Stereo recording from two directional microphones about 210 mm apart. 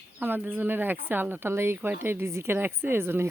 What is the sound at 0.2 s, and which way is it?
Speech, 10° right (ahead or behind).